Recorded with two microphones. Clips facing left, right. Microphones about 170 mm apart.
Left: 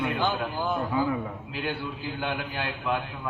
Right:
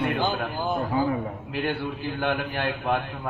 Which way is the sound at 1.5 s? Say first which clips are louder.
Right 5 dB; 55° right (ahead or behind).